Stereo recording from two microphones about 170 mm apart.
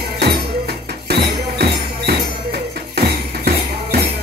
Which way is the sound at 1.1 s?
70° right (ahead or behind).